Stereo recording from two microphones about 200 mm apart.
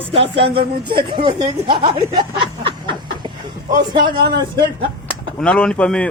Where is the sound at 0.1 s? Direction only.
25° right (ahead or behind).